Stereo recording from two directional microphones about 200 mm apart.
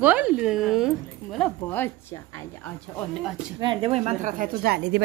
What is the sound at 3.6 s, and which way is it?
Speech, 25° right (ahead or behind).